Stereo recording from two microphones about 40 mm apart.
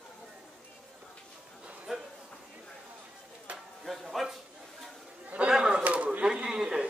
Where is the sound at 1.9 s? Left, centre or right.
Centre.